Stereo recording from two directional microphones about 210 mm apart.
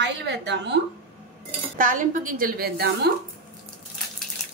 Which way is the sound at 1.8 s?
40° right (ahead or behind).